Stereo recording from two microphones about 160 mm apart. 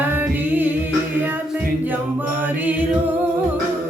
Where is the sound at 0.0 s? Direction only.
10° right (ahead or behind).